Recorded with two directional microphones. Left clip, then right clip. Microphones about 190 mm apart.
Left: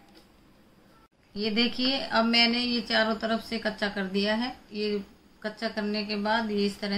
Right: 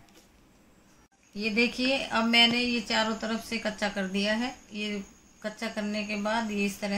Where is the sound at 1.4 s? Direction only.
30° right (ahead or behind).